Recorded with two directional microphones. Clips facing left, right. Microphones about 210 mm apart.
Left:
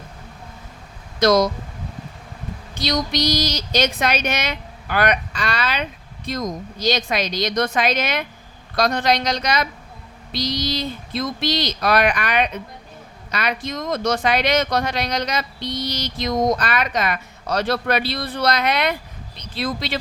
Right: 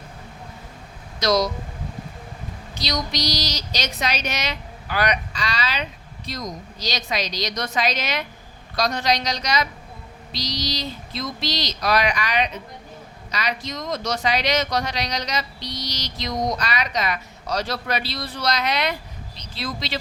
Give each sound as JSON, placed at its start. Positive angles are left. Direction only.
{"t": 1.2, "sound": "speech", "side_deg": 50}
{"t": 2.7, "sound": "speech", "side_deg": 55}